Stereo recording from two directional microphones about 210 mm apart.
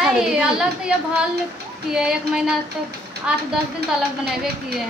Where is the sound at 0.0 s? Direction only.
5° right (ahead or behind).